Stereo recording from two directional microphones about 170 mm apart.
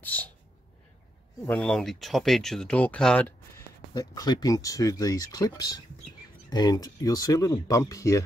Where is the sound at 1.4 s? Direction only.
5° left (ahead or behind).